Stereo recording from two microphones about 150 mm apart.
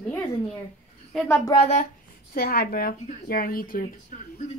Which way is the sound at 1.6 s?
45° left (ahead or behind).